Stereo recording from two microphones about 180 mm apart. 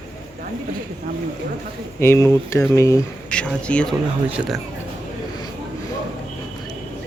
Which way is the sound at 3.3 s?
5° left (ahead or behind).